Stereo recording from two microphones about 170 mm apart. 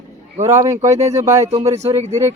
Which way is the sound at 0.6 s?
20° right (ahead or behind).